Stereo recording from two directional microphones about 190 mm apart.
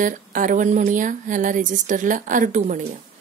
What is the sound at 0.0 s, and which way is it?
Speech, 45° right (ahead or behind).